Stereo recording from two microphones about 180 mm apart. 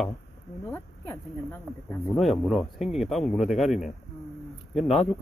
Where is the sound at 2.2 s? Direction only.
Centre (ahead or behind).